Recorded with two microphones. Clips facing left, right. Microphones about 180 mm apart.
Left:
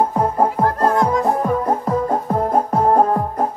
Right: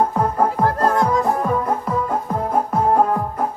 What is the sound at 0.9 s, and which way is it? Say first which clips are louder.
Music: left 1 dB; 35° left (ahead or behind).